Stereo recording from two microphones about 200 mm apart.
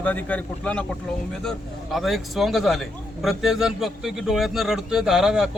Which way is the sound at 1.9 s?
Centre (ahead or behind).